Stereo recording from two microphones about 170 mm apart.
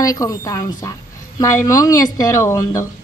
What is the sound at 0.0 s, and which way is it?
A woman's voice, 20° left (ahead or behind).